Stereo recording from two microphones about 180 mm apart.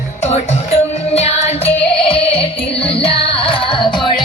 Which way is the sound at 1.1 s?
35° left (ahead or behind).